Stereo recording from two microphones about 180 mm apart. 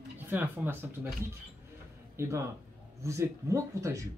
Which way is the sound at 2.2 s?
15° right (ahead or behind).